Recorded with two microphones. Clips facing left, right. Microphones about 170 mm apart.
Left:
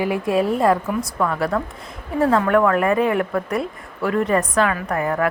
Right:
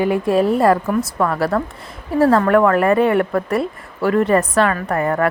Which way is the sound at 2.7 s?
Centre (ahead or behind).